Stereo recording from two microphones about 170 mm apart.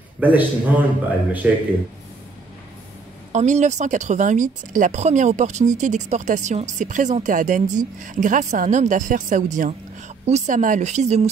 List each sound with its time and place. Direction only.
0.2 s speech: 10° right (ahead or behind)
3.3 s speech: 45° right (ahead or behind)